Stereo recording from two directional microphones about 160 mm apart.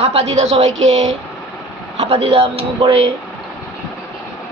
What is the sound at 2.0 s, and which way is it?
A man's voice, 40° right (ahead or behind).